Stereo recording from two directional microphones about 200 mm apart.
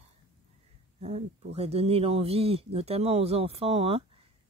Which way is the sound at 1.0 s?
30° right (ahead or behind).